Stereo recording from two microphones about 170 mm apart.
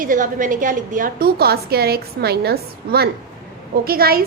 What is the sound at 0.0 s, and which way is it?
A woman's voice, 50° right (ahead or behind).